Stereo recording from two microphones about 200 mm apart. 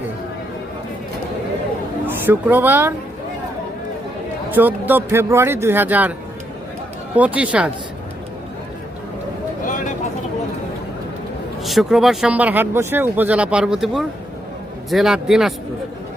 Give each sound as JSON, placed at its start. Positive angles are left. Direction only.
{"t": 2.0, "sound": "speech", "side_deg": -10}
{"t": 4.5, "sound": "speech", "side_deg": -10}
{"t": 7.2, "sound": "speech", "side_deg": -5}
{"t": 11.6, "sound": "speech", "side_deg": 0}